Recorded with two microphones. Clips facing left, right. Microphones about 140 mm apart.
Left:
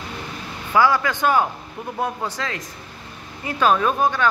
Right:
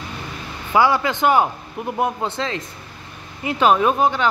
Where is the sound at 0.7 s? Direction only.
20° right (ahead or behind).